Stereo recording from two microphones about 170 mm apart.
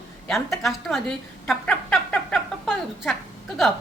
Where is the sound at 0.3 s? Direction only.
Centre (ahead or behind).